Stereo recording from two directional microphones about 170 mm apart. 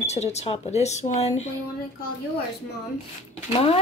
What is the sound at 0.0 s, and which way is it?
A woman's voice, 40° left (ahead or behind).